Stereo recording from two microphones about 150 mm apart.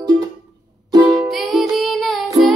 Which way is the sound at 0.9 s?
25° right (ahead or behind).